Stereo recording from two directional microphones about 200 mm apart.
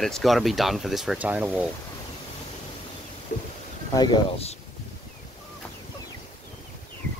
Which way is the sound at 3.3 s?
40° left (ahead or behind).